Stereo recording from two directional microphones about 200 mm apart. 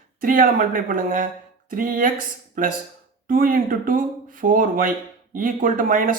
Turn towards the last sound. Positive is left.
turn(degrees=-45)  # may be behind; listen again after turning